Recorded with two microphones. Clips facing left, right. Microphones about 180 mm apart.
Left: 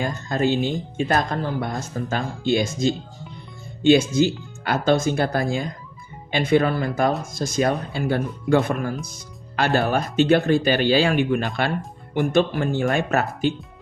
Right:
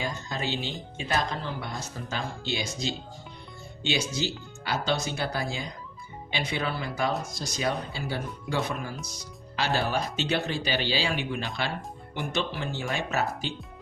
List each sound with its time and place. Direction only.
0.0 s speech: 50° left (ahead or behind)